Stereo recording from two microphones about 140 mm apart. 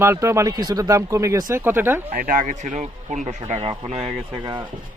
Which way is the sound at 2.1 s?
90° right.